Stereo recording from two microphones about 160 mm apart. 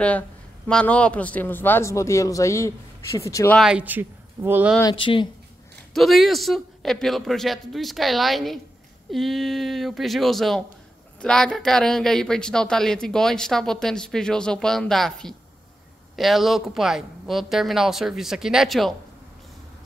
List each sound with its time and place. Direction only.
0.7 s a man's voice: 5° left (ahead or behind)
3.5 s speech: 5° right (ahead or behind)
4.9 s speech: 30° left (ahead or behind)
5.9 s speech: centre (ahead or behind)